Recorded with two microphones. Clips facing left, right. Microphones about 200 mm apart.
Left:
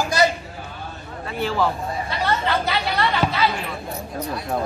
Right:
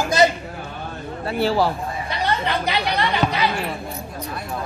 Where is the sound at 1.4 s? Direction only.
35° right (ahead or behind).